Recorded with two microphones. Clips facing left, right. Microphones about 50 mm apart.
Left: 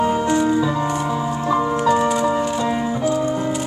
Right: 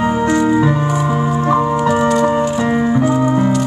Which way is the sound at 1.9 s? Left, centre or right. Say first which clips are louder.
Right 2 dB; right.